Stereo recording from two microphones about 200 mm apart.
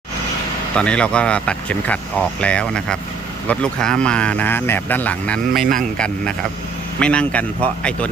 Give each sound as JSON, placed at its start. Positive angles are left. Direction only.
{"t": 0.8, "sound": "speech", "side_deg": 5}